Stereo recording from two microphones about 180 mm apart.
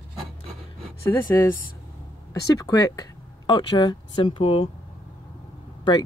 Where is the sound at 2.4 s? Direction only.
20° left (ahead or behind).